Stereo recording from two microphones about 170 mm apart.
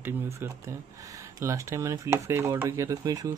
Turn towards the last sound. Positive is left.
turn(degrees=-20)  # may be behind; listen again after turning